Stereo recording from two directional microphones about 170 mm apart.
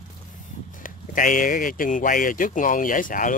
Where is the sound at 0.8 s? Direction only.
50° left (ahead or behind).